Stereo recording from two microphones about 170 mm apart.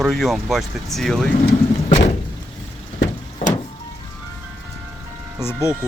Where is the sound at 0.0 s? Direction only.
Centre (ahead or behind).